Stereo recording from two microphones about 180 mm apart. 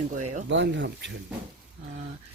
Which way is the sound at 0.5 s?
90° right.